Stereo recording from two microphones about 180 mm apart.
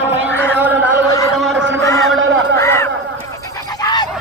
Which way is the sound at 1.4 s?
Centre (ahead or behind).